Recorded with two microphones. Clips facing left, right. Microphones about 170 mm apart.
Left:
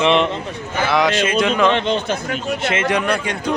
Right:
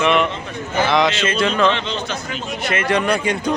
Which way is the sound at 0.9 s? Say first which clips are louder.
Left 2 dB; 10° left (ahead or behind).